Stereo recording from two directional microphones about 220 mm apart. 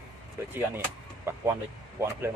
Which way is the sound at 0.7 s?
10° right (ahead or behind).